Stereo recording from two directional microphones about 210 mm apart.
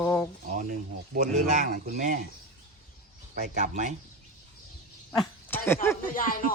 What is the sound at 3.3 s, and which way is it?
Speech, 35° right (ahead or behind).